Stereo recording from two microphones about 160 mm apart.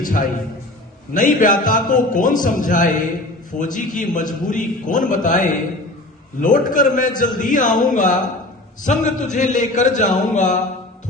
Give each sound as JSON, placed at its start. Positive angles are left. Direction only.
{"t": 0.0, "sound": "a man's voice", "side_deg": 55}